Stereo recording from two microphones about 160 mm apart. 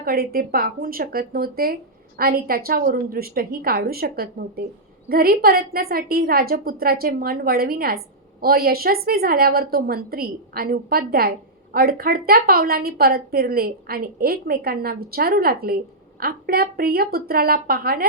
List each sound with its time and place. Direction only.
0.0 s a woman's voice: 70° right (ahead or behind)